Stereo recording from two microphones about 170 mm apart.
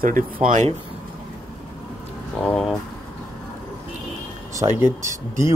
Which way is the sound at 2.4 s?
5° left (ahead or behind).